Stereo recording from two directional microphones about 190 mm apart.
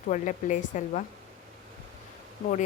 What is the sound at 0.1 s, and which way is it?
Speech, 40° left (ahead or behind).